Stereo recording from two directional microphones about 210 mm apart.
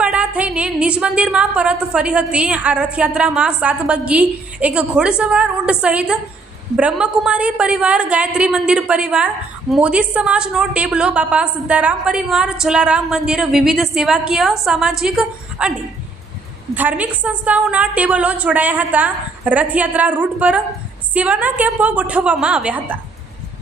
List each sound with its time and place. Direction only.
0.0 s a woman's voice: 5° right (ahead or behind)
16.7 s a woman's voice: 5° right (ahead or behind)